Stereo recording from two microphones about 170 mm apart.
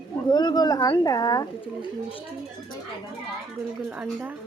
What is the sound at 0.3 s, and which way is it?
Speech, 25° left (ahead or behind).